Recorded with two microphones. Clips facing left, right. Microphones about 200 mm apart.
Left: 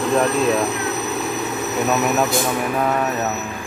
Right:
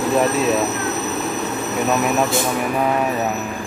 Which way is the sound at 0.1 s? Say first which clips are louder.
Even; 5° right (ahead or behind).